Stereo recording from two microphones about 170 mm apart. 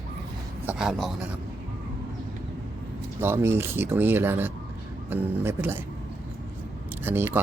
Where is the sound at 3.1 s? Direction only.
15° right (ahead or behind).